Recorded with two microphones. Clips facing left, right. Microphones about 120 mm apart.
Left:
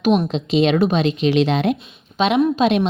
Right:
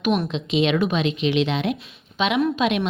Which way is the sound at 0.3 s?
40° left (ahead or behind).